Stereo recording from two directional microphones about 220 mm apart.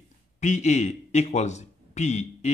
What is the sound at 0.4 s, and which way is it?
Speech, 30° left (ahead or behind).